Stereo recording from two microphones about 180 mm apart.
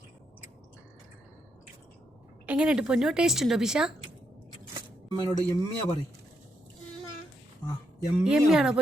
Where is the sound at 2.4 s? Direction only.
5° right (ahead or behind).